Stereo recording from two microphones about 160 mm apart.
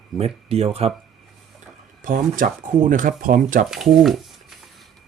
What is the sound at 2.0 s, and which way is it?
Speech, 60° right (ahead or behind).